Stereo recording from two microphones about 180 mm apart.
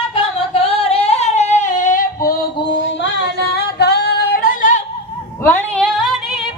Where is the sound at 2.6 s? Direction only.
75° left (ahead or behind).